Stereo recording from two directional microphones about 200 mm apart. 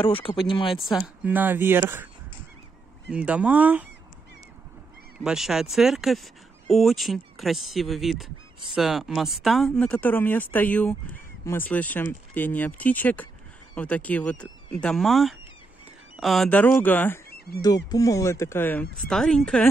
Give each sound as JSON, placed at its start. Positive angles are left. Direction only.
{"t": 0.0, "sound": "speech", "side_deg": 25}
{"t": 0.7, "sound": "speech", "side_deg": 0}
{"t": 3.1, "sound": "speech", "side_deg": -5}
{"t": 5.2, "sound": "speech", "side_deg": -5}